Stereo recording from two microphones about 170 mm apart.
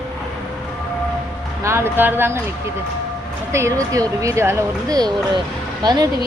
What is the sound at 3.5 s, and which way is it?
Speech, 15° right (ahead or behind).